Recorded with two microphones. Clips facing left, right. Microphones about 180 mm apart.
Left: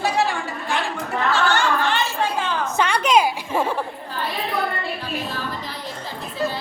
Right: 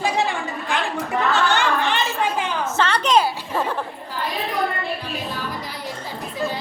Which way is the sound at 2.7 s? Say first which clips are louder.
Even; 10° left (ahead or behind).